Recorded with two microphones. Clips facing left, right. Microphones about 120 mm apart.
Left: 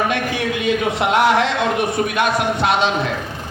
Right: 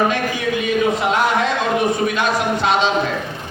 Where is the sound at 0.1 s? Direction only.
70° left (ahead or behind).